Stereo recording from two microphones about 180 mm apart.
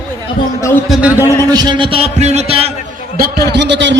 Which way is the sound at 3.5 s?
75° right (ahead or behind).